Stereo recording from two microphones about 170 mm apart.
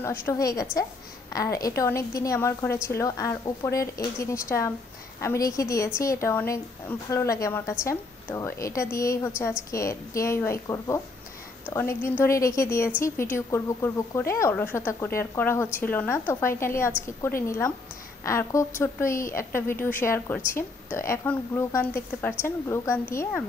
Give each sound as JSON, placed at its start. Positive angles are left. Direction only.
{"t": 0.0, "sound": "a woman's voice", "side_deg": 15}